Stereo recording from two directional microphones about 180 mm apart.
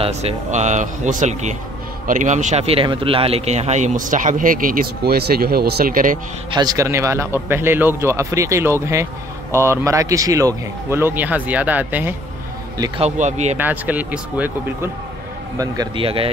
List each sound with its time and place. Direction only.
0.0 s speech: 35° right (ahead or behind)
6.5 s a man's voice: 20° right (ahead or behind)
12.7 s speech: 20° right (ahead or behind)
13.0 s speech: 40° right (ahead or behind)
13.6 s a man's voice: 10° right (ahead or behind)
15.5 s a man's voice: 20° right (ahead or behind)